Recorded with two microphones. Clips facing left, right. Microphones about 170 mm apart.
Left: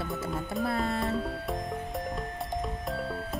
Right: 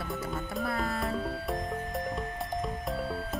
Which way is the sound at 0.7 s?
25° left (ahead or behind).